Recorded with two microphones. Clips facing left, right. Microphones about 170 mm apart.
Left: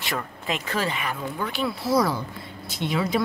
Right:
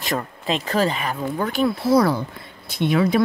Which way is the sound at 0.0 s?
35° right (ahead or behind).